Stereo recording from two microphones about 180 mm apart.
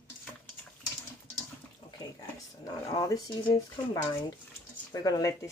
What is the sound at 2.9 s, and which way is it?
Speech, 20° left (ahead or behind).